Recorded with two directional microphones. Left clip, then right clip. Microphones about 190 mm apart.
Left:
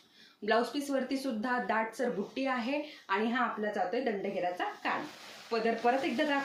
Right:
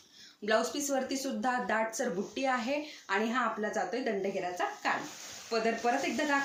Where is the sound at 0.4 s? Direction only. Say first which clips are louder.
Even; 25° right (ahead or behind).